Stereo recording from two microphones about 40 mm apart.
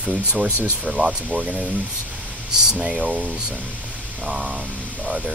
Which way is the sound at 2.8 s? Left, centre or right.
Centre.